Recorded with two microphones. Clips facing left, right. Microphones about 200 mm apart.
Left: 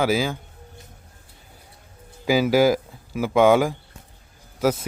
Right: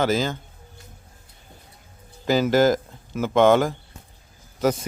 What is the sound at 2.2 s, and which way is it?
Speech, 10° left (ahead or behind).